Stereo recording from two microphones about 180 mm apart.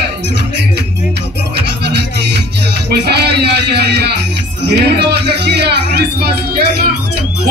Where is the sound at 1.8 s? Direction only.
70° right (ahead or behind).